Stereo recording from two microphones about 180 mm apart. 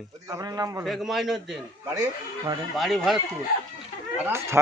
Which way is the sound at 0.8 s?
Centre (ahead or behind).